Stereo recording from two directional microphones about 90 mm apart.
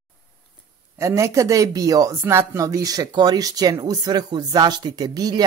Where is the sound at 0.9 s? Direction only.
35° right (ahead or behind).